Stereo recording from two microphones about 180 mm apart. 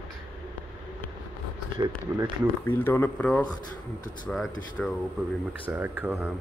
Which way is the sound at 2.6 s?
10° left (ahead or behind).